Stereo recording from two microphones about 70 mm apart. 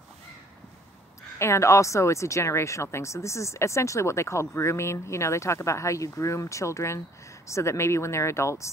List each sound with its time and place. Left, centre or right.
1.4 s speech: left